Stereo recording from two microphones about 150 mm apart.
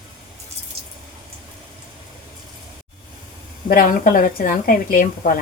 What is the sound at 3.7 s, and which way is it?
Speech, 70° left (ahead or behind).